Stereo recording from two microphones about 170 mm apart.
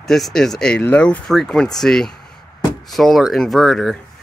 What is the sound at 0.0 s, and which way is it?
Speech, centre (ahead or behind).